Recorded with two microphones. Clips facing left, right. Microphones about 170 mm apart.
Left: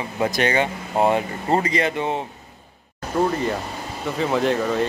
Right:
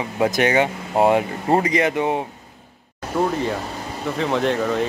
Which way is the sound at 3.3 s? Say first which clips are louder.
Even; centre (ahead or behind).